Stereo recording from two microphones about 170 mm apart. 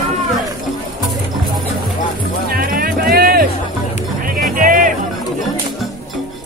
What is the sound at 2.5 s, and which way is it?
Music, 60° right (ahead or behind).